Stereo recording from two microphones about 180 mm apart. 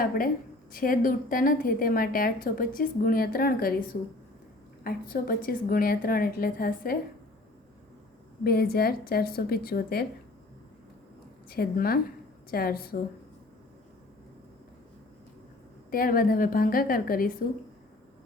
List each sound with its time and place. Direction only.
0.7 s a woman's voice: 50° left (ahead or behind)
4.8 s a woman's voice: 55° left (ahead or behind)
8.4 s a woman's voice: 60° left (ahead or behind)
11.4 s a woman's voice: 55° left (ahead or behind)
15.9 s a woman's voice: 50° left (ahead or behind)